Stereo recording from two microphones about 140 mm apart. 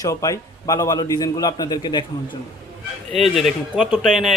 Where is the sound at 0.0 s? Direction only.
25° left (ahead or behind).